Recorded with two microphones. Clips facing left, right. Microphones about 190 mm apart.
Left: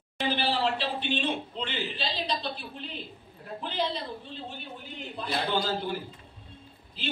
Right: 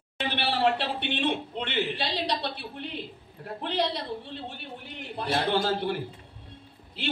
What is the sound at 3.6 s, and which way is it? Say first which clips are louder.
Speech: right 3 dB; 70° right (ahead or behind).